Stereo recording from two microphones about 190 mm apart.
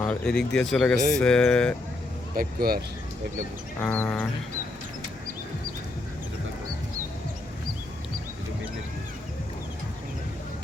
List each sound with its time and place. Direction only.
0.1 s speech: 5° left (ahead or behind)
2.3 s speech: 50° right (ahead or behind)
3.8 s music: 10° left (ahead or behind)